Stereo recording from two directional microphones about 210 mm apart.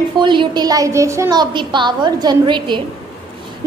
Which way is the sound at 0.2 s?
20° right (ahead or behind).